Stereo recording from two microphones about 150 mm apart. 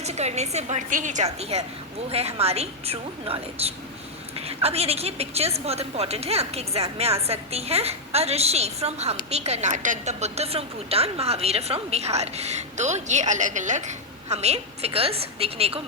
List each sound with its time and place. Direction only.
0.0 s a woman's voice: 45° right (ahead or behind)